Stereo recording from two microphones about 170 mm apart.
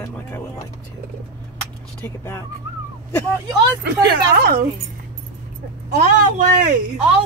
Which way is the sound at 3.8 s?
65° right (ahead or behind).